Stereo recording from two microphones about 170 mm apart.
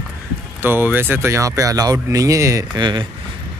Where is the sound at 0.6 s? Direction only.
10° right (ahead or behind).